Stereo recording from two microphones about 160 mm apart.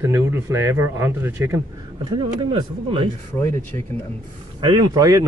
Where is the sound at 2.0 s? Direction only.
30° right (ahead or behind).